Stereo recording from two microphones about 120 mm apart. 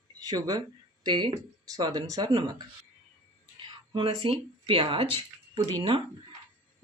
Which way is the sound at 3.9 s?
45° right (ahead or behind).